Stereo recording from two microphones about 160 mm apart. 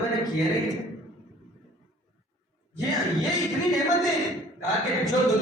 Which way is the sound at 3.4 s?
Centre (ahead or behind).